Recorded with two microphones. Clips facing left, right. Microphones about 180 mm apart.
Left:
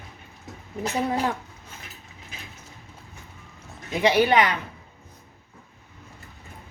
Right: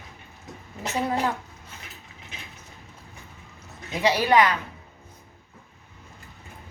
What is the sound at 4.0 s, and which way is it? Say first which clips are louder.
Speech: left 1 dB; 20° left (ahead or behind).